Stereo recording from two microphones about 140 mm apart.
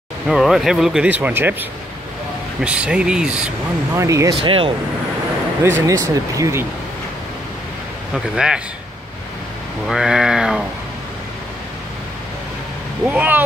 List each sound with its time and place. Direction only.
0.3 s speech: centre (ahead or behind)
3.9 s speech: 20° right (ahead or behind)
4.4 s speech: 40° right (ahead or behind)
5.6 s speech: 20° right (ahead or behind)
8.1 s speech: 5° right (ahead or behind)
9.8 s speech: 5° right (ahead or behind)
13.0 s speech: 10° right (ahead or behind)